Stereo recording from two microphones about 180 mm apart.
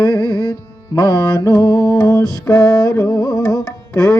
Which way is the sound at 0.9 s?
25° left (ahead or behind).